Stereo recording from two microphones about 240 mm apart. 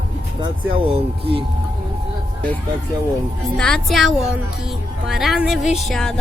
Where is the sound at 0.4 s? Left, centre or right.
Right.